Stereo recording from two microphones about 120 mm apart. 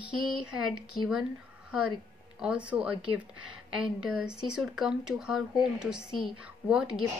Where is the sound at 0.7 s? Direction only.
Centre (ahead or behind).